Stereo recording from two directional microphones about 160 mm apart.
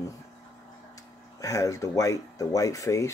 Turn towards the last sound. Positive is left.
turn(degrees=20)  # may be behind; listen again after turning